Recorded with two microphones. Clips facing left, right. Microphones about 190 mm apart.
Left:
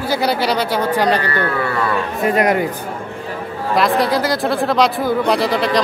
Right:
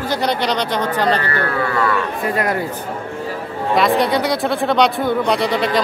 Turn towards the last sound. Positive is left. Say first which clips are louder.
# left 1 dB
turn(degrees=0)  # may be behind; listen again after turning